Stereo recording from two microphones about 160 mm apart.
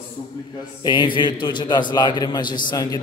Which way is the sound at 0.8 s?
30° left (ahead or behind).